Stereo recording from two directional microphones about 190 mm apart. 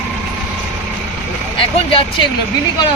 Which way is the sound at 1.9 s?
30° left (ahead or behind).